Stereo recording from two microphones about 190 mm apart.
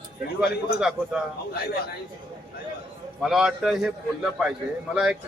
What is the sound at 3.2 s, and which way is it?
A man's voice, centre (ahead or behind).